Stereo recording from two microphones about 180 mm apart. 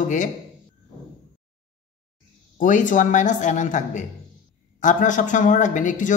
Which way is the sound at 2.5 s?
45° left (ahead or behind).